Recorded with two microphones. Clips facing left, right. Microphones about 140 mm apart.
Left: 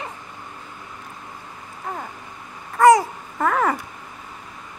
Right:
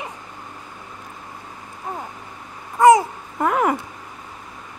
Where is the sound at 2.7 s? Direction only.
20° right (ahead or behind).